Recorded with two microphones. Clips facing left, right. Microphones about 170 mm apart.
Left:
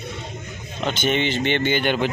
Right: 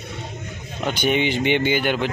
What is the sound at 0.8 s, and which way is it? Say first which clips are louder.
Speech: right 1 dB; 10° right (ahead or behind).